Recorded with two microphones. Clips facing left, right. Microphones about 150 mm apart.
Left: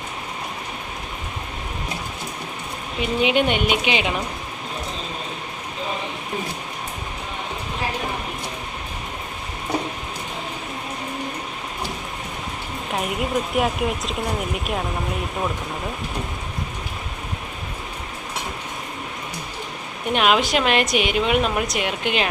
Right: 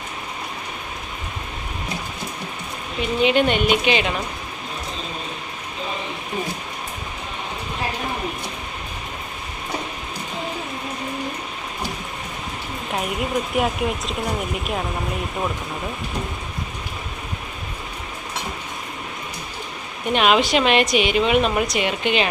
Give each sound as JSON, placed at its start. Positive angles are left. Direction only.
{"t": 3.0, "sound": "speech", "side_deg": 10}
{"t": 12.9, "sound": "speech", "side_deg": 0}
{"t": 20.1, "sound": "speech", "side_deg": 5}
{"t": 20.8, "sound": "speech", "side_deg": 50}
{"t": 21.1, "sound": "speech", "side_deg": 5}